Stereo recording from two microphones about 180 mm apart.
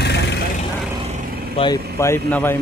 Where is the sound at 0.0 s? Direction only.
70° left (ahead or behind).